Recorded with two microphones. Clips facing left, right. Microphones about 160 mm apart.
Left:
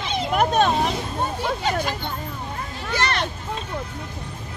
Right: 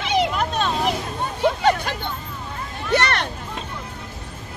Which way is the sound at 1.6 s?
55° right (ahead or behind).